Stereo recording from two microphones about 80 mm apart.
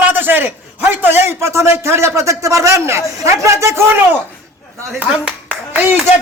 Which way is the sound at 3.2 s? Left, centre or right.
Right.